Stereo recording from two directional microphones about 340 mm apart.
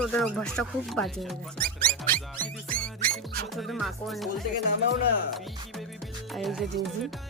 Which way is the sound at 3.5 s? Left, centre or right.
Centre.